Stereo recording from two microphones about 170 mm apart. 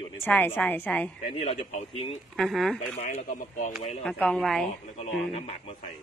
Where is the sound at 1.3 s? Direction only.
40° left (ahead or behind).